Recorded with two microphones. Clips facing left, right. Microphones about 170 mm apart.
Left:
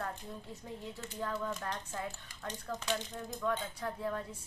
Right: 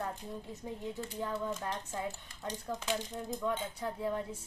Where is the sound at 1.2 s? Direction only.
20° right (ahead or behind).